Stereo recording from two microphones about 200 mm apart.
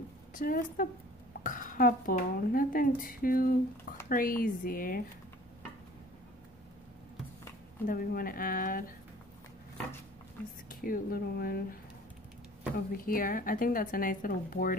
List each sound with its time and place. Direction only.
0.3 s a woman's voice: 40° left (ahead or behind)
7.8 s speech: 45° left (ahead or behind)
10.7 s speech: 45° left (ahead or behind)
12.9 s speech: 45° left (ahead or behind)